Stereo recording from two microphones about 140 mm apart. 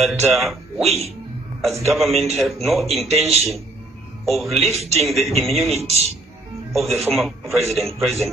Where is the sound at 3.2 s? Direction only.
45° right (ahead or behind).